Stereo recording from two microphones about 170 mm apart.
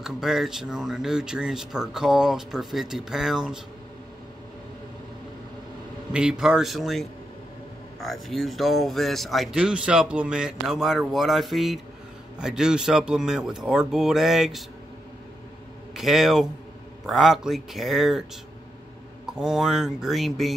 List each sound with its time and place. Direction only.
0.0 s speech: centre (ahead or behind)
6.1 s speech: 5° right (ahead or behind)
15.9 s speech: centre (ahead or behind)
19.2 s speech: centre (ahead or behind)